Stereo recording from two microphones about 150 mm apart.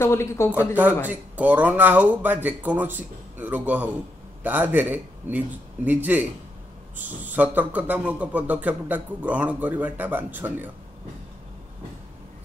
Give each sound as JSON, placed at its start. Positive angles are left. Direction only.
{"t": 0.0, "sound": "speech", "side_deg": 20}
{"t": 1.0, "sound": "a man's voice", "side_deg": -10}